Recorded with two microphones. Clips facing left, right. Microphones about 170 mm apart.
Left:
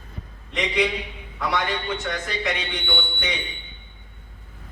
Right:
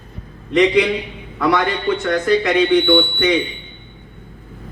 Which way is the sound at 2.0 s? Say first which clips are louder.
Right 11 dB; 60° right (ahead or behind).